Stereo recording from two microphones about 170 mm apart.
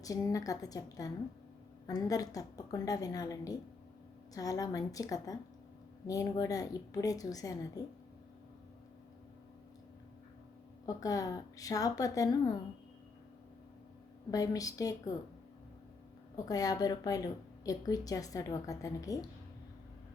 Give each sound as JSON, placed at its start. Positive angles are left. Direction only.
{"t": 0.0, "sound": "a woman's voice", "side_deg": 20}
{"t": 10.8, "sound": "a woman's voice", "side_deg": 20}
{"t": 14.3, "sound": "a woman's voice", "side_deg": 20}
{"t": 16.5, "sound": "a woman's voice", "side_deg": 20}